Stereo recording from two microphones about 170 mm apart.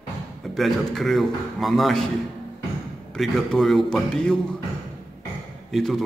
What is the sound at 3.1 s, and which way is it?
A man's voice, centre (ahead or behind).